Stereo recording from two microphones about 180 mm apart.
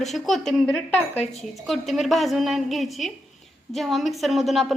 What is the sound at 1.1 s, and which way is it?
Speech, 35° left (ahead or behind).